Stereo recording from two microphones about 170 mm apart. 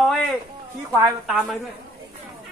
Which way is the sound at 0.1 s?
Centre (ahead or behind).